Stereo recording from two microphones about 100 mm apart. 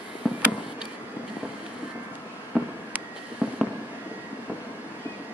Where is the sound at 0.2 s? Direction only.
10° right (ahead or behind).